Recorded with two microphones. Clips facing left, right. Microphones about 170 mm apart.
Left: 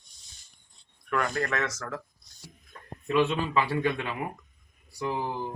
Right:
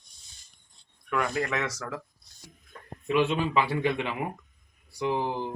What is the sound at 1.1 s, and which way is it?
Speech, 5° right (ahead or behind).